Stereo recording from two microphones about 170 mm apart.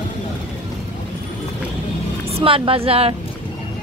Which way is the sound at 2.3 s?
30° right (ahead or behind).